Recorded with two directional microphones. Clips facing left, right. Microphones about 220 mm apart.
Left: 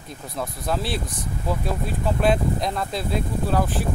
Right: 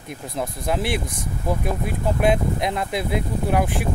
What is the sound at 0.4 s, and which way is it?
Speech, 20° right (ahead or behind).